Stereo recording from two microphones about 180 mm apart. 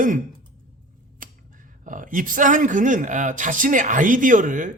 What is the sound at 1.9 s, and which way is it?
Speech, 45° right (ahead or behind).